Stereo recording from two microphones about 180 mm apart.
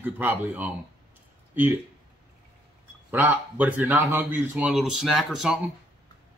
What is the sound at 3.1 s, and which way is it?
A man's voice, 10° right (ahead or behind).